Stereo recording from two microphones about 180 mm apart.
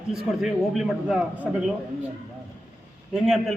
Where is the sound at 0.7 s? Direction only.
5° right (ahead or behind).